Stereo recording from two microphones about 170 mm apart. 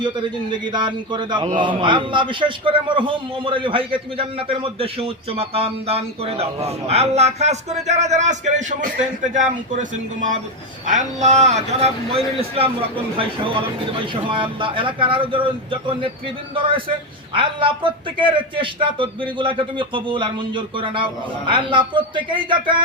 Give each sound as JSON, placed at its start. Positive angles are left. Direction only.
{"t": 0.0, "sound": "a man's voice", "side_deg": -25}
{"t": 17.3, "sound": "a man's voice", "side_deg": -30}